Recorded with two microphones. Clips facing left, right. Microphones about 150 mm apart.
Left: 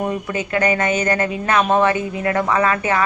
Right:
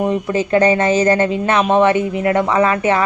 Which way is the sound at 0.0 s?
25° right (ahead or behind).